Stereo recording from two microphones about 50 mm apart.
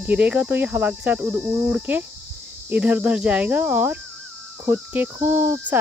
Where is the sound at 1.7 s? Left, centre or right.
Right.